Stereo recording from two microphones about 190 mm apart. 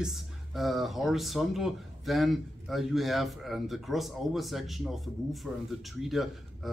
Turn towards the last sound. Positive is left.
turn(degrees=0)  # may be behind; listen again after turning